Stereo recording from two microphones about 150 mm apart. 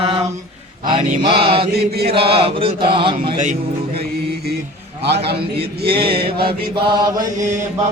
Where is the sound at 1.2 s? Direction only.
35° right (ahead or behind).